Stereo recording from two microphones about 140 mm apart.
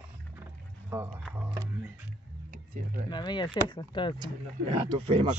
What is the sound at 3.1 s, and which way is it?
Speech, 30° left (ahead or behind).